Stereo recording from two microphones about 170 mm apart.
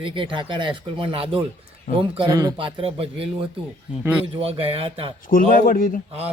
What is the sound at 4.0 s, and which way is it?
Speech, 10° right (ahead or behind).